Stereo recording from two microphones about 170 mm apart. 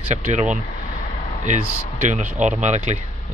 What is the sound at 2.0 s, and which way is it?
Speech, 45° right (ahead or behind).